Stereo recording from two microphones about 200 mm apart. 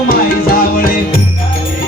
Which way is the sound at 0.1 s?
45° left (ahead or behind).